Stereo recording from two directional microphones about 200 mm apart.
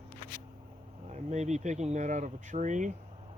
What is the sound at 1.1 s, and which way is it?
Speech, 35° right (ahead or behind).